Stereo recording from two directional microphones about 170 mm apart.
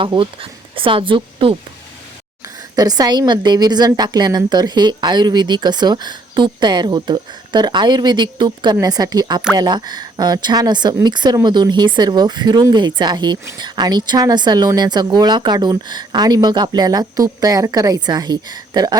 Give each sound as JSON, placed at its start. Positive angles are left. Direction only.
{"t": 0.0, "sound": "speech", "side_deg": -30}
{"t": 2.7, "sound": "speech", "side_deg": -20}